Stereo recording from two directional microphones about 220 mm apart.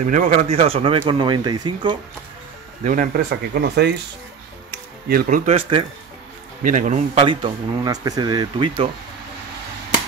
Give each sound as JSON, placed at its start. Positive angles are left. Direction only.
{"t": 0.1, "sound": "a man's voice", "side_deg": -30}
{"t": 2.8, "sound": "speech", "side_deg": -35}
{"t": 5.0, "sound": "speech", "side_deg": -45}
{"t": 6.6, "sound": "a man's voice", "side_deg": -35}